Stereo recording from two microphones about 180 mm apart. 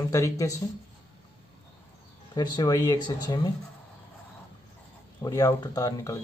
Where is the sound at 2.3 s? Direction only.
20° left (ahead or behind).